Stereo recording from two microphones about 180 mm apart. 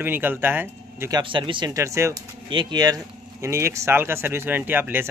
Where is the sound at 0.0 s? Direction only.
10° right (ahead or behind).